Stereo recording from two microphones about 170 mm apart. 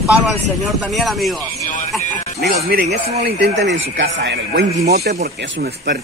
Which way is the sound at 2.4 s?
65° right (ahead or behind).